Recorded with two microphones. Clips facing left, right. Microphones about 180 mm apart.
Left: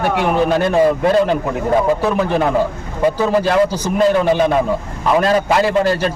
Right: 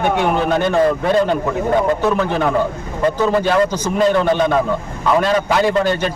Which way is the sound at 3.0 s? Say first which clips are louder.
Left 1 dB; 10° left (ahead or behind).